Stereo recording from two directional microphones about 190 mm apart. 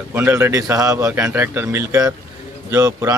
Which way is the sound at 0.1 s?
10° right (ahead or behind).